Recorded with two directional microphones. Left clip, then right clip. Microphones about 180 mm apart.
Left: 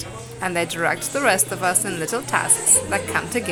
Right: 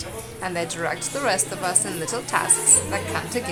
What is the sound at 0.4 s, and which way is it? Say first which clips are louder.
A woman's voice: left 5 dB; 25° left (ahead or behind).